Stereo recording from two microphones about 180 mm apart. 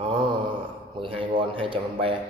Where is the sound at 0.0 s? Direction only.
25° right (ahead or behind).